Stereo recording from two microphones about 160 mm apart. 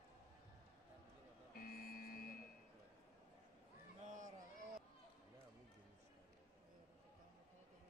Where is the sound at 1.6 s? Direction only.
70° left (ahead or behind).